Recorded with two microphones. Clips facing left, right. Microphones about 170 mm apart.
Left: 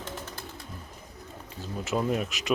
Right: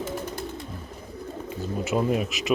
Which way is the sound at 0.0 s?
15° right (ahead or behind).